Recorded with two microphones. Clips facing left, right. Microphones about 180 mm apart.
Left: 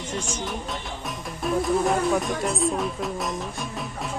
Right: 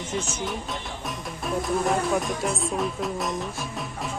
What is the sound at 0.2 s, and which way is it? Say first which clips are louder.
Speech: even; 5° right (ahead or behind).